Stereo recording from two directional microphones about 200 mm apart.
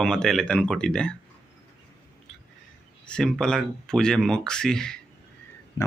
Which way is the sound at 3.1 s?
5° left (ahead or behind).